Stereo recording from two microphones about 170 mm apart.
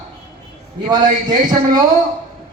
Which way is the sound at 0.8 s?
25° right (ahead or behind).